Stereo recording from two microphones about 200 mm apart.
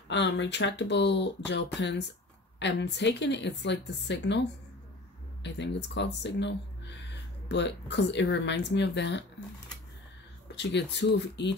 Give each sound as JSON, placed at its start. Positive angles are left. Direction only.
{"t": 0.1, "sound": "speech", "side_deg": 60}
{"t": 10.5, "sound": "speech", "side_deg": 60}